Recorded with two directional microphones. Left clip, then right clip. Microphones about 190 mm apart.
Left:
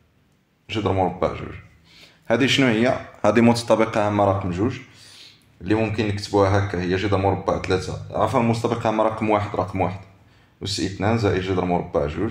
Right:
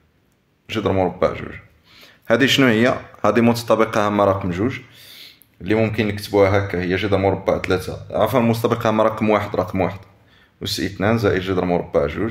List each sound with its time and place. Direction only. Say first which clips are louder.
0.7 s speech: right 2 dB; 35° right (ahead or behind)
3.3 s speech: right 1 dB; 10° right (ahead or behind)
4.1 s a man's voice: right 3 dB; 30° right (ahead or behind)